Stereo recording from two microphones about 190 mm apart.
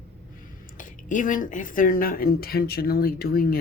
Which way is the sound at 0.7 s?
45° left (ahead or behind).